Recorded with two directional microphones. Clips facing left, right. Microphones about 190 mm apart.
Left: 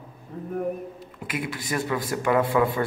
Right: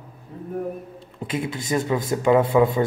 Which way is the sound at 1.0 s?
25° right (ahead or behind).